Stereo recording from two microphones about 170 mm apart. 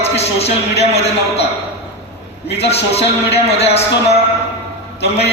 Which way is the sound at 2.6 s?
35° left (ahead or behind).